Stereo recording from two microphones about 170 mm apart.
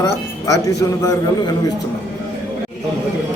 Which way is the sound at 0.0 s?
20° left (ahead or behind).